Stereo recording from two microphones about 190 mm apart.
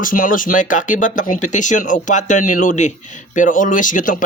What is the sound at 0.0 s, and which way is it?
Speech, 45° left (ahead or behind).